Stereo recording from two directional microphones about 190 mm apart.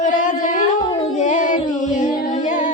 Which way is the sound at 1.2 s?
40° left (ahead or behind).